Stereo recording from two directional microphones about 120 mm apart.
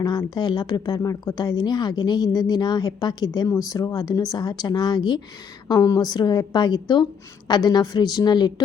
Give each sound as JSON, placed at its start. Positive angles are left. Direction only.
{"t": 0.0, "sound": "a woman's voice", "side_deg": 35}